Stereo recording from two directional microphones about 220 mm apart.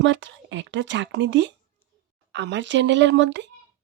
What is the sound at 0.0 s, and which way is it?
Speech, 55° right (ahead or behind).